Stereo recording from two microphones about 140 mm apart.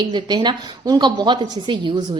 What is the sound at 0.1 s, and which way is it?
A woman's voice, 35° right (ahead or behind).